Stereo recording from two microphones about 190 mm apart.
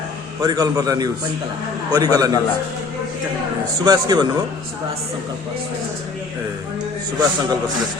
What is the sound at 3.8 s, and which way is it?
Speech, 20° right (ahead or behind).